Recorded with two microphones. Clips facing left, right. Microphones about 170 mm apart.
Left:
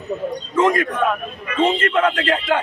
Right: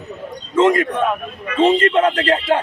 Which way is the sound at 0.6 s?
25° right (ahead or behind).